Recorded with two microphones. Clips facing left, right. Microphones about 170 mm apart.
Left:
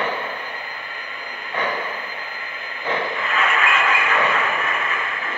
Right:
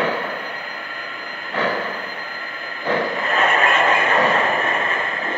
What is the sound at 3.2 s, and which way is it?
Vehicle, 40° right (ahead or behind).